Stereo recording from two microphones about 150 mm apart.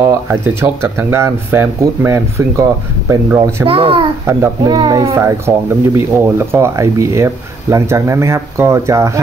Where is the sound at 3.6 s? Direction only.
40° right (ahead or behind).